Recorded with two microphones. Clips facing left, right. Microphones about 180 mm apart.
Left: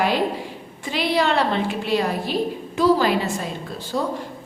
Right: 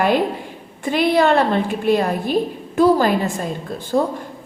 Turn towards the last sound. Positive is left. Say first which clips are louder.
# right 6 dB
turn(degrees=-50)  # may be behind; listen again after turning